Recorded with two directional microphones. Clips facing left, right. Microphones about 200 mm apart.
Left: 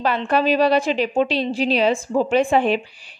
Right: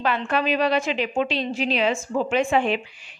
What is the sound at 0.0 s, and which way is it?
A woman's voice, 35° left (ahead or behind).